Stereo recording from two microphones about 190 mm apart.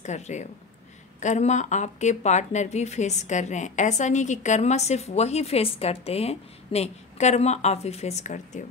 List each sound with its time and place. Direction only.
0.0 s a woman's voice: 40° left (ahead or behind)